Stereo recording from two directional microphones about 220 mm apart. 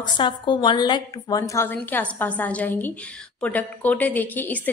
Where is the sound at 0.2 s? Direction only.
20° left (ahead or behind).